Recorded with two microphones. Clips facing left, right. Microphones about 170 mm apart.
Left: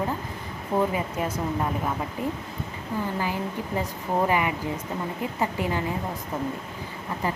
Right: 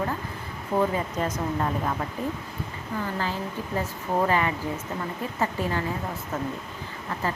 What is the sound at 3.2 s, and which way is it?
Speech, 15° left (ahead or behind).